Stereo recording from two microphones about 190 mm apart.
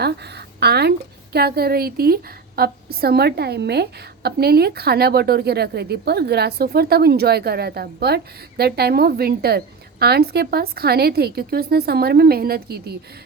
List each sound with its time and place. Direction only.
0.0 s a woman's voice: 60° right (ahead or behind)